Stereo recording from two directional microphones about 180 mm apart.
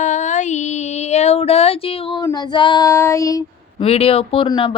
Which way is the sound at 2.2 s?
25° left (ahead or behind).